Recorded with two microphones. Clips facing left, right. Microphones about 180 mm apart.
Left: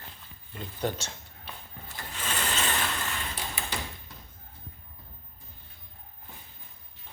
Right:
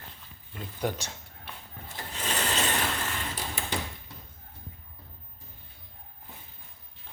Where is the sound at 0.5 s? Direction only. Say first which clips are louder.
Even; 5° right (ahead or behind).